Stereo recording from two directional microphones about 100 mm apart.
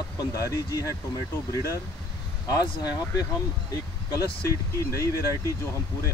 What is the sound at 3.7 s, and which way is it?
Speech, 35° left (ahead or behind).